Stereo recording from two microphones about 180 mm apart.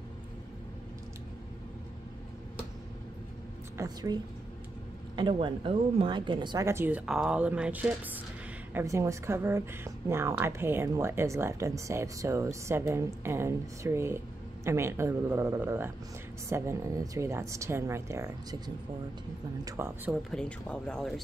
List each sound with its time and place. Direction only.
3.7 s a woman's voice: 20° right (ahead or behind)
20.1 s speech: 5° left (ahead or behind)